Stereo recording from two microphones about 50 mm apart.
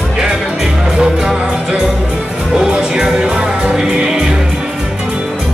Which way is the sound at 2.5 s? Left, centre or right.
Centre.